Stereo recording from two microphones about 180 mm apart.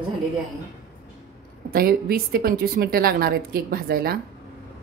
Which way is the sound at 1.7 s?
55° right (ahead or behind).